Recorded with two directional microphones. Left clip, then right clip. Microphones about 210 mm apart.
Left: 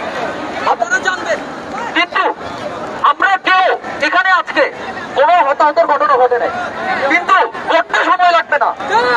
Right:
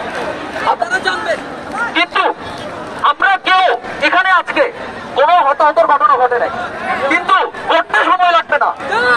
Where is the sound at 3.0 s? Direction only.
5° left (ahead or behind).